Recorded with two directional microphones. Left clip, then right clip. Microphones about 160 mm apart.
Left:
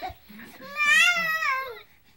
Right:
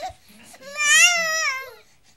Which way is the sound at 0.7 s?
25° right (ahead or behind).